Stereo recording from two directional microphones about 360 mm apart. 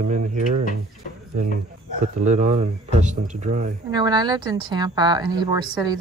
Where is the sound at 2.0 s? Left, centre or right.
Right.